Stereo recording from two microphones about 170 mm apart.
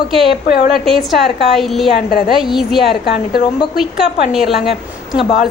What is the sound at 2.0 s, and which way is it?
Speech, 65° left (ahead or behind).